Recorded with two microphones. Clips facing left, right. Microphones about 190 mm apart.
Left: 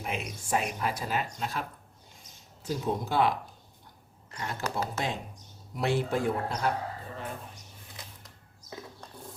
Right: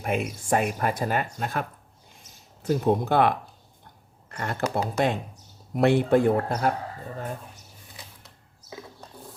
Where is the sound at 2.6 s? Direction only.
60° right (ahead or behind).